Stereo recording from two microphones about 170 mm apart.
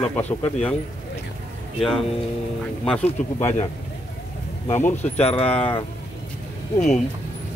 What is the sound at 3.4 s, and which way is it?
Speech, 15° left (ahead or behind).